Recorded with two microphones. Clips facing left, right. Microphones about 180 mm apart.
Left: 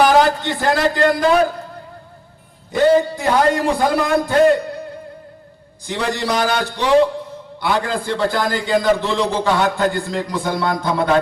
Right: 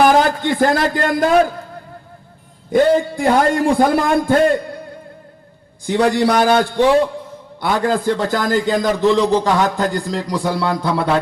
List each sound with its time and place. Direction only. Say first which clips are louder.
0.0 s a man's voice: right 1 dB; 50° right (ahead or behind)
2.7 s a man's voice: even; 50° right (ahead or behind)
5.8 s a man's voice: right 7 dB; 50° right (ahead or behind)